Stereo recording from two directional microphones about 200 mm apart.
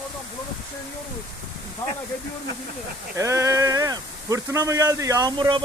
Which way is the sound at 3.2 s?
15° right (ahead or behind).